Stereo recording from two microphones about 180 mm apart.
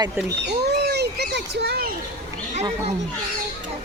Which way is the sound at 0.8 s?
65° right (ahead or behind).